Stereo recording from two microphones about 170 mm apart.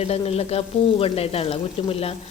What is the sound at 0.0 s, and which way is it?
A woman's voice, 35° left (ahead or behind).